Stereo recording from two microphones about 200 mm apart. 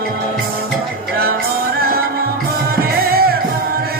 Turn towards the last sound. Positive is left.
turn(degrees=-50)  # may be behind; listen again after turning